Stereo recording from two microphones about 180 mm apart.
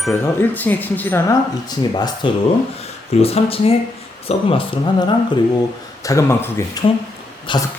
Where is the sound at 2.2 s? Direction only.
25° left (ahead or behind).